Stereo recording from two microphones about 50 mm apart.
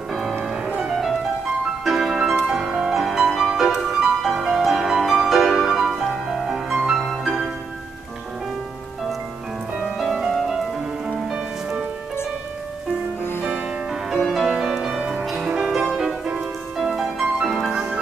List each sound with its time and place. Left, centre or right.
0.1 s music: centre
0.4 s music: right
1.9 s music: centre
2.5 s music: centre
9.8 s music: centre
14.2 s music: centre
15.0 s music: centre
15.2 s music: centre